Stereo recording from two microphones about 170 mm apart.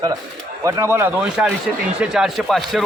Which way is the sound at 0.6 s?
15° right (ahead or behind).